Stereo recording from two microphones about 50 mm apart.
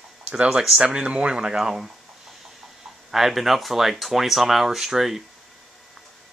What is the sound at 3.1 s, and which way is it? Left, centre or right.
Speech, centre.